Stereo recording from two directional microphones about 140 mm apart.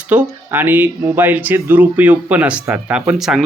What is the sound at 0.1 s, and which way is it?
Speech, 10° right (ahead or behind).